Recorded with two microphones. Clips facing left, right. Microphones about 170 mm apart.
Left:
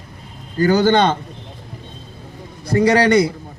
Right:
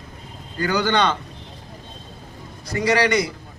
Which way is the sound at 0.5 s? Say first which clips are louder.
Left 7 dB; 40° left (ahead or behind).